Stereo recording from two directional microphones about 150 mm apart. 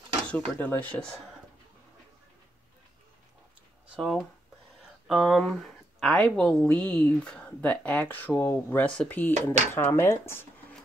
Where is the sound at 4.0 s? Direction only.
Centre (ahead or behind).